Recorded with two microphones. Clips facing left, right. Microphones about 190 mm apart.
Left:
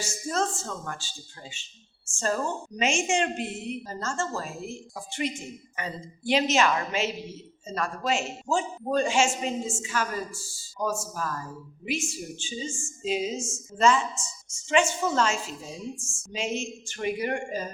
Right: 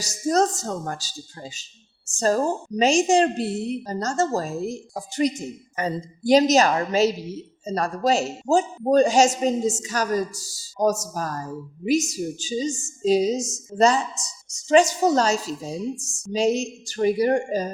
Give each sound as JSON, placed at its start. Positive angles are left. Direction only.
{"t": 0.0, "sound": "a woman's voice", "side_deg": -40}